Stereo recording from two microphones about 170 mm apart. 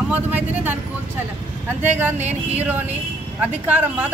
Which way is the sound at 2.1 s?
40° right (ahead or behind).